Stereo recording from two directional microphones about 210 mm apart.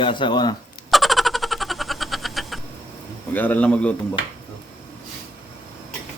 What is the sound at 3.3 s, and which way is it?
Speech, 10° left (ahead or behind).